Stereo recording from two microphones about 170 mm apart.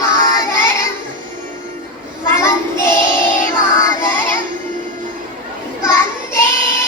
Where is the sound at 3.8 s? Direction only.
15° left (ahead or behind).